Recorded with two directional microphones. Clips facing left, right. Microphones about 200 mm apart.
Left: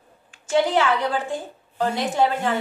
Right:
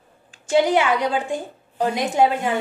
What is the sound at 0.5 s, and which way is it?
A woman's voice, 15° right (ahead or behind).